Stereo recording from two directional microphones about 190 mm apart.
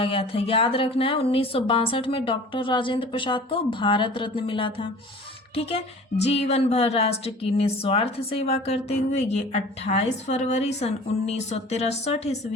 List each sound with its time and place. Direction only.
0.0 s a woman's voice: 30° left (ahead or behind)